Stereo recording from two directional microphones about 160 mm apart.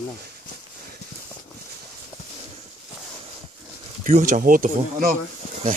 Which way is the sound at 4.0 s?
55° right (ahead or behind).